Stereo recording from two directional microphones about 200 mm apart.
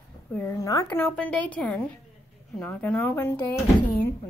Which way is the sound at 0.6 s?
15° left (ahead or behind).